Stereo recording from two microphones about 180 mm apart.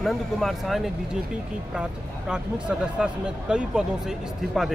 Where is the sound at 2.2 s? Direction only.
5° right (ahead or behind).